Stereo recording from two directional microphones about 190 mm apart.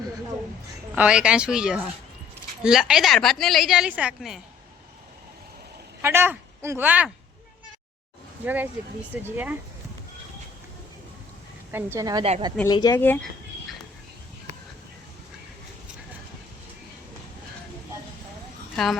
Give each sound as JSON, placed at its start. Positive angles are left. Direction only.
{"t": 0.9, "sound": "a woman's voice", "side_deg": -5}
{"t": 6.0, "sound": "speech", "side_deg": -15}
{"t": 8.4, "sound": "a woman's voice", "side_deg": -10}
{"t": 11.7, "sound": "a woman's voice", "side_deg": -15}
{"t": 12.6, "sound": "speech", "side_deg": 20}
{"t": 13.0, "sound": "speech", "side_deg": 10}
{"t": 18.8, "sound": "a woman's voice", "side_deg": 0}